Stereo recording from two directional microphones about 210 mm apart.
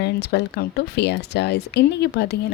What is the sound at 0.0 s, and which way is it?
Speech, 50° left (ahead or behind).